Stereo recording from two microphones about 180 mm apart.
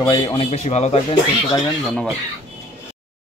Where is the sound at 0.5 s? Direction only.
40° left (ahead or behind).